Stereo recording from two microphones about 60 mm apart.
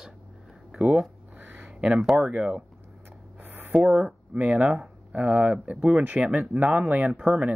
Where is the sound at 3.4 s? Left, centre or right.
Right.